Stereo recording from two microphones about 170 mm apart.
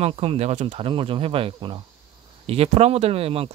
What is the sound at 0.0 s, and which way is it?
Speech, 35° right (ahead or behind).